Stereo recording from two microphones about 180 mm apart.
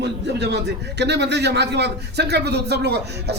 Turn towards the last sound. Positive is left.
turn(degrees=-65)  # may be behind; listen again after turning